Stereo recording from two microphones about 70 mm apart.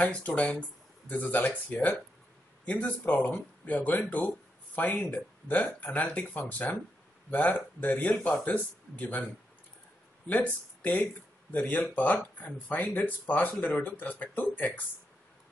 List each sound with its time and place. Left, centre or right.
0.0 s speech: centre